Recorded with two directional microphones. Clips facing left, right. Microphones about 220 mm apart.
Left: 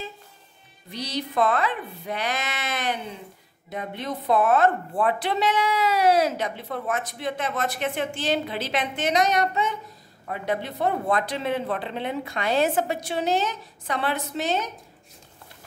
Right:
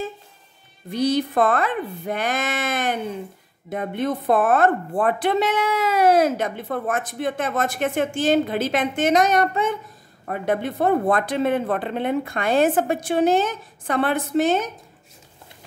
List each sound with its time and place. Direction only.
0.8 s speech: 50° right (ahead or behind)